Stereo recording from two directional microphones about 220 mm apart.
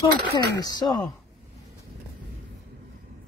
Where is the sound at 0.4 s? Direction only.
20° left (ahead or behind).